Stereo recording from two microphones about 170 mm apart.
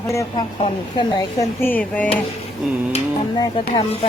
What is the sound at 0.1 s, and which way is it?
Speech, 20° left (ahead or behind).